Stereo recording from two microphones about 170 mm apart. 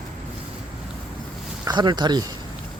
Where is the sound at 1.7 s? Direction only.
25° right (ahead or behind).